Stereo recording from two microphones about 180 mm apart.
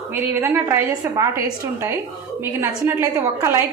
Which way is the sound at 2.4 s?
15° right (ahead or behind).